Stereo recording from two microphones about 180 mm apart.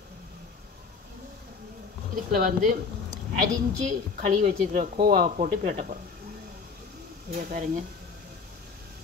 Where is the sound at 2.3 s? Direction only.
50° right (ahead or behind).